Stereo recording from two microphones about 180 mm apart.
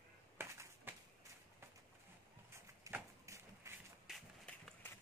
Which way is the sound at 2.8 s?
15° right (ahead or behind).